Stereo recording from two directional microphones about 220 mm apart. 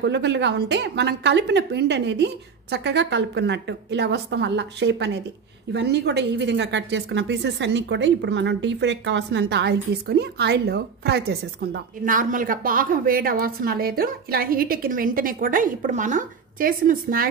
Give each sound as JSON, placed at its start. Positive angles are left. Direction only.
{"t": 0.0, "sound": "a woman's voice", "side_deg": -50}